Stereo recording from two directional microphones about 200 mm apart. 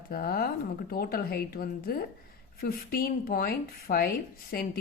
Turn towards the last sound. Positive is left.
turn(degrees=50)  # may be behind; listen again after turning